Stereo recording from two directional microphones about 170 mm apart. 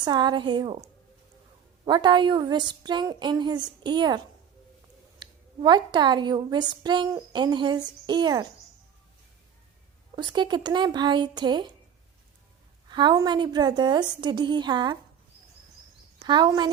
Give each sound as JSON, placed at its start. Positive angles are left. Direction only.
{"t": 0.0, "sound": "a woman's voice", "side_deg": -25}
{"t": 5.2, "sound": "a woman's voice", "side_deg": -25}
{"t": 10.2, "sound": "a woman's voice", "side_deg": -25}
{"t": 12.9, "sound": "a woman's voice", "side_deg": -25}
{"t": 16.2, "sound": "a woman's voice", "side_deg": -25}